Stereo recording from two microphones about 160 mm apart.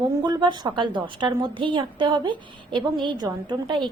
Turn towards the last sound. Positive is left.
turn(degrees=-30)  # may be behind; listen again after turning